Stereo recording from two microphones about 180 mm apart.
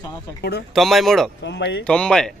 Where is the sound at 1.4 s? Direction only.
75° left (ahead or behind).